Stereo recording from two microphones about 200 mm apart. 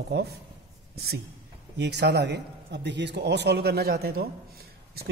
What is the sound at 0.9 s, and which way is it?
A man's voice, 50° right (ahead or behind).